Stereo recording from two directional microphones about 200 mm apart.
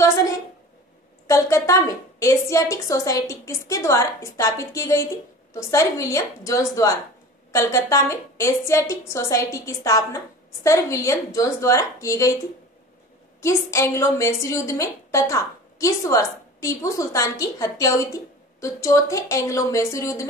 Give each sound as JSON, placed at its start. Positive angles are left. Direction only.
{"t": 1.2, "sound": "a woman's voice", "side_deg": 15}
{"t": 13.4, "sound": "a woman's voice", "side_deg": 15}